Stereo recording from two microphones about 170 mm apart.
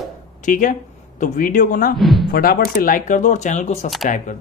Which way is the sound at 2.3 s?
60° left (ahead or behind).